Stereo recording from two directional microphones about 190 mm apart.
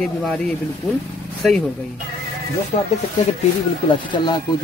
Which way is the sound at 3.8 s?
25° left (ahead or behind).